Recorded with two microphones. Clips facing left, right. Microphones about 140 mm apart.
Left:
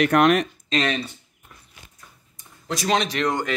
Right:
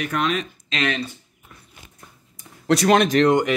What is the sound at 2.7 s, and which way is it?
Speech, 60° right (ahead or behind).